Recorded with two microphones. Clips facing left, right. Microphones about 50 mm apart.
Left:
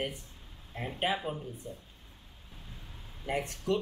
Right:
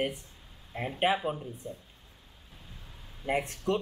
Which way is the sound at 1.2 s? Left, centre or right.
Centre.